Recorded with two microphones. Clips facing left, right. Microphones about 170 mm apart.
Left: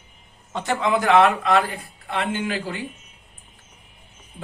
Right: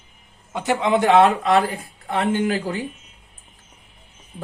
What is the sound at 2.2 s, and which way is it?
Speech, 40° right (ahead or behind).